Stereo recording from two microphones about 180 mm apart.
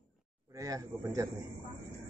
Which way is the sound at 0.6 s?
20° right (ahead or behind).